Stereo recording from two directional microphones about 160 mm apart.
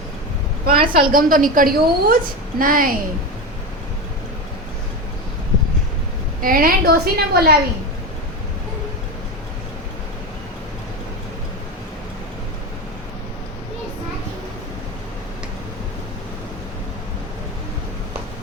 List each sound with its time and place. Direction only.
0.6 s a woman's voice: 65° right (ahead or behind)
6.4 s a woman's voice: 60° right (ahead or behind)